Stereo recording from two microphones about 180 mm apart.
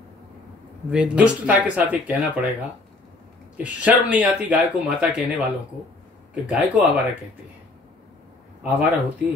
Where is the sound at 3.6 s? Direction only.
10° right (ahead or behind).